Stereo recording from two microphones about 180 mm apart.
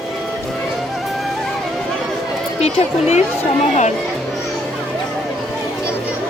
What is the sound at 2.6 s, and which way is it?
Speech, 35° left (ahead or behind).